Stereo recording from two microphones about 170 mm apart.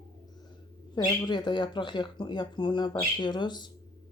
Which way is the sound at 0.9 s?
25° left (ahead or behind).